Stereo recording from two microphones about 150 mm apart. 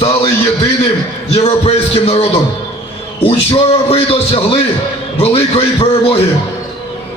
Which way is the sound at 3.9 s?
40° left (ahead or behind).